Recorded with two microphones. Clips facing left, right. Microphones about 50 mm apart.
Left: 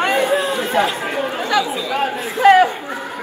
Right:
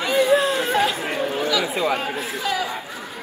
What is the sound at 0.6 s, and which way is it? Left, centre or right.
Chatter, left.